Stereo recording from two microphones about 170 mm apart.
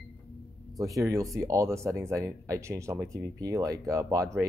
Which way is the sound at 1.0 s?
20° right (ahead or behind).